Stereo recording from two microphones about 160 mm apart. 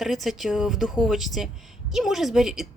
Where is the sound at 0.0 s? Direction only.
Centre (ahead or behind).